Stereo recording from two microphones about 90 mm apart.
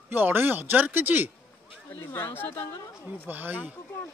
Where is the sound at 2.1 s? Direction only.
25° left (ahead or behind).